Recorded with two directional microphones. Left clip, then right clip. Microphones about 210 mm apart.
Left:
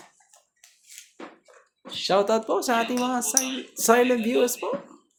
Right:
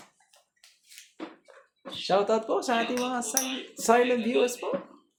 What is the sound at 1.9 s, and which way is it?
Speech, 30° left (ahead or behind).